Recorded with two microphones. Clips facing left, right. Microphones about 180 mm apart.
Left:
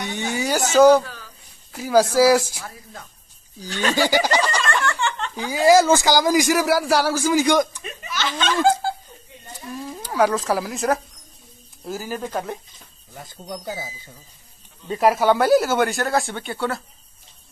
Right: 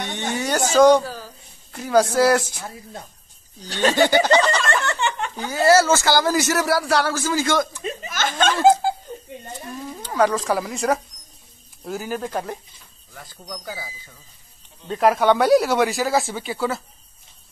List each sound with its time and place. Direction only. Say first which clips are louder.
0.1 s speech: left 1 dB; 10° left (ahead or behind)
1.0 s a sound: right 7 dB; 35° right (ahead or behind)
1.7 s speech: left 1 dB; 5° left (ahead or behind)
2.6 s a woman's voice: right 3 dB; 25° right (ahead or behind)
3.9 s speech: right 3 dB; 10° left (ahead or behind)
4.8 s a sound: even; 15° right (ahead or behind)
5.3 s speech: left 2 dB; 10° left (ahead or behind)
8.1 s speech: right 2 dB; 50° right (ahead or behind)
8.6 s a sound: right 5 dB; 15° right (ahead or behind)
10.0 s speech: even; 5° left (ahead or behind)
13.1 s speech: left 3 dB; 20° left (ahead or behind)
14.9 s speech: even; 5° left (ahead or behind)